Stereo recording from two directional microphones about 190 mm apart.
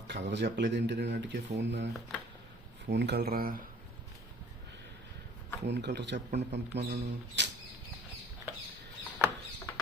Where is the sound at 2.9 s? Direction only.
60° right (ahead or behind).